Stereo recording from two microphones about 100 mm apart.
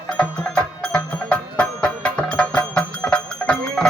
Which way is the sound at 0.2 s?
10° left (ahead or behind).